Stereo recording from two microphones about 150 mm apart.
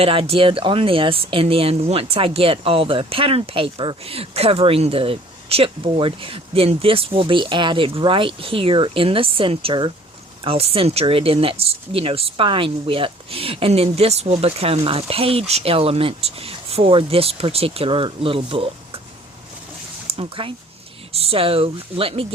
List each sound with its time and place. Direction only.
0.0 s speech: 40° right (ahead or behind)
20.1 s speech: 40° right (ahead or behind)